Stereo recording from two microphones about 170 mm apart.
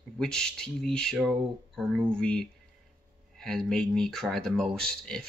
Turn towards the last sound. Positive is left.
turn(degrees=5)  # may be behind; listen again after turning